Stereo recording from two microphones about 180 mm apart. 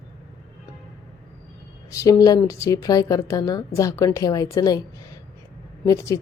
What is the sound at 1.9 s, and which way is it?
A woman's voice, 20° left (ahead or behind).